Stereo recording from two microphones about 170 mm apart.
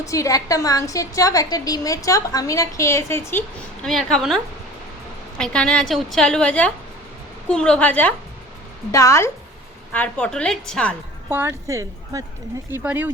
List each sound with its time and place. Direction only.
0.0 s a woman's voice: 20° left (ahead or behind)
3.8 s a woman's voice: centre (ahead or behind)
5.4 s a woman's voice: 5° left (ahead or behind)
11.3 s speech: 15° right (ahead or behind)